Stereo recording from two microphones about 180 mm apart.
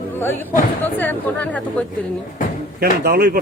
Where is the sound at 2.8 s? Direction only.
60° right (ahead or behind).